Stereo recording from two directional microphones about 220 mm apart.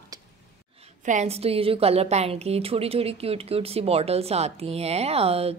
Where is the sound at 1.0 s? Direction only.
30° right (ahead or behind).